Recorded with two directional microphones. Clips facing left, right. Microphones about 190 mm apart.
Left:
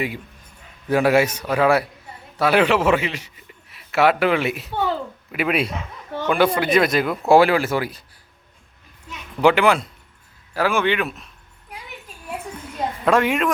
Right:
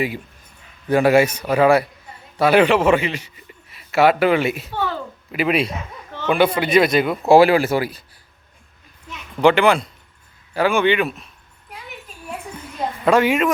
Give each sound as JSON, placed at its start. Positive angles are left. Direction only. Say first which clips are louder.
{"t": 0.9, "sound": "a man's voice", "louder": "right 2 dB", "side_deg": 0}
{"t": 9.4, "sound": "a man's voice", "louder": "right 2 dB", "side_deg": 5}
{"t": 13.1, "sound": "a man's voice", "louder": "right 3 dB", "side_deg": 0}